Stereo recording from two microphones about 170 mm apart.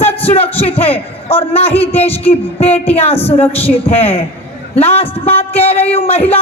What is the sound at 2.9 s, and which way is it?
Speech, 35° left (ahead or behind).